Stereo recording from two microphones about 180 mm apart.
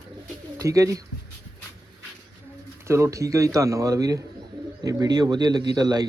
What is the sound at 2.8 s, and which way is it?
A man's voice, 15° right (ahead or behind).